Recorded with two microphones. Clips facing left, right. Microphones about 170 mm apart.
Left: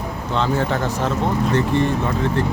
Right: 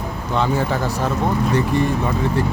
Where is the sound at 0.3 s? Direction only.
10° right (ahead or behind).